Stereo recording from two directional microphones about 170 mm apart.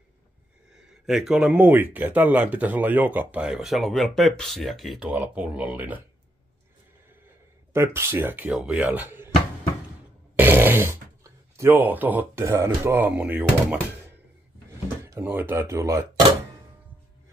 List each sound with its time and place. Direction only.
0.7 s speech: centre (ahead or behind)
7.7 s speech: 15° right (ahead or behind)
10.3 s a sound: 10° right (ahead or behind)
11.5 s speech: 15° right (ahead or behind)